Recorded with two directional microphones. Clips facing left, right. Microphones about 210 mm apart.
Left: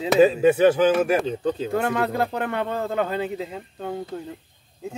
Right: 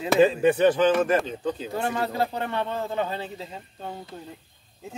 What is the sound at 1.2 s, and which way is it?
Speech, 30° left (ahead or behind).